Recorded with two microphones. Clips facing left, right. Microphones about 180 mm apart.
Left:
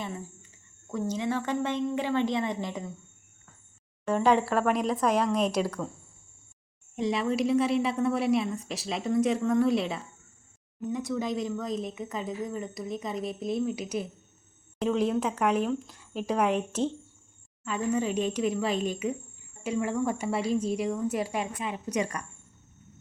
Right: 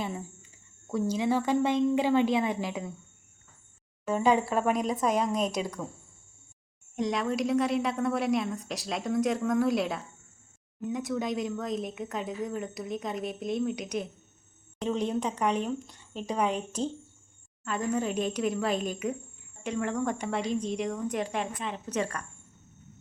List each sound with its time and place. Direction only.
0.9 s a woman's voice: 10° right (ahead or behind)
4.0 s speech: centre (ahead or behind)
5.6 s speech: 20° right (ahead or behind)
6.9 s speech: centre (ahead or behind)
18.1 s a woman's voice: 10° right (ahead or behind)
19.6 s speech: 5° left (ahead or behind)